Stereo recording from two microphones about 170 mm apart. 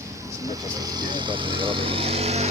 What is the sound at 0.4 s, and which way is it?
Speech, 20° right (ahead or behind).